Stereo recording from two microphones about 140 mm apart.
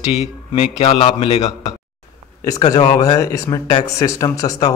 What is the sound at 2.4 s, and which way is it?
Speech, 30° left (ahead or behind).